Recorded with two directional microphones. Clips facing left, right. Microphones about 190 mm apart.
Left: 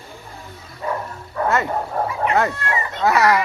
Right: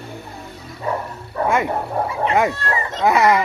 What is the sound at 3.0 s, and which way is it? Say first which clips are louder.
Speech: right 1 dB; 20° right (ahead or behind).